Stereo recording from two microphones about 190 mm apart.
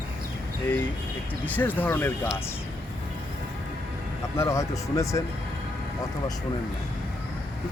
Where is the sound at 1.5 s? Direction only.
10° left (ahead or behind).